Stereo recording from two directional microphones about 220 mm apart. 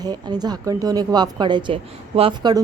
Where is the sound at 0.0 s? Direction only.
20° right (ahead or behind).